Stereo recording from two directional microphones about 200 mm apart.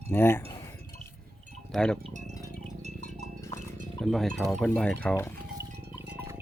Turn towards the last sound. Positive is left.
turn(degrees=10)  # may be behind; listen again after turning